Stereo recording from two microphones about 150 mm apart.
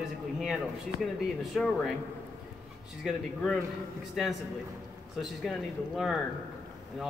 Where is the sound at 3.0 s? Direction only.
Centre (ahead or behind).